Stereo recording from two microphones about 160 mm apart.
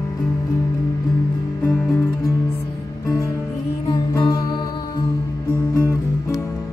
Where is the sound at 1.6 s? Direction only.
10° left (ahead or behind).